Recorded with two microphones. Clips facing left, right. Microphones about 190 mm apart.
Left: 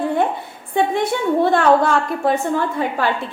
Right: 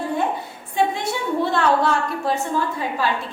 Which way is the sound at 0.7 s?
55° left (ahead or behind).